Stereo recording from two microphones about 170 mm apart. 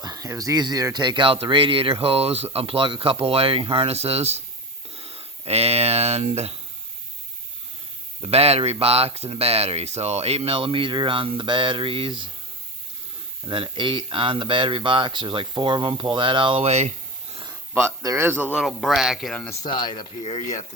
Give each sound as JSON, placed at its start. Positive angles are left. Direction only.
{"t": 0.0, "sound": "speech", "side_deg": -20}
{"t": 8.2, "sound": "speech", "side_deg": -35}
{"t": 13.5, "sound": "speech", "side_deg": -30}
{"t": 17.7, "sound": "speech", "side_deg": -15}
{"t": 18.6, "sound": "speech", "side_deg": 0}
{"t": 19.6, "sound": "speech", "side_deg": 25}
{"t": 20.3, "sound": "speech", "side_deg": 40}